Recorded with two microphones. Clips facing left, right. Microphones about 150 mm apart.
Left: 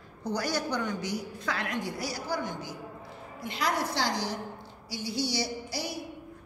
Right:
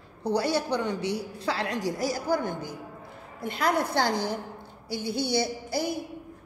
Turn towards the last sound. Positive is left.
turn(degrees=-50)  # may be behind; listen again after turning